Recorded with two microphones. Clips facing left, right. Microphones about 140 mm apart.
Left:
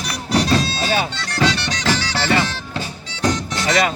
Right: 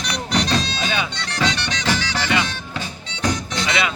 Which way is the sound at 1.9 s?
40° left (ahead or behind).